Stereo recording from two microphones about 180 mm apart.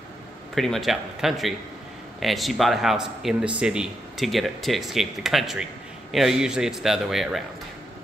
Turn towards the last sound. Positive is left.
turn(degrees=0)  # may be behind; listen again after turning